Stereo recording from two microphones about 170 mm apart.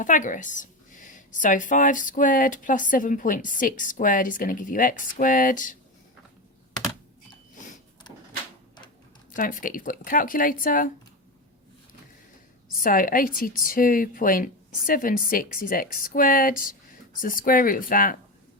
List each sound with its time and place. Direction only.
0.0 s a woman's voice: 50° left (ahead or behind)
9.3 s a woman's voice: 50° left (ahead or behind)
12.6 s a woman's voice: 55° left (ahead or behind)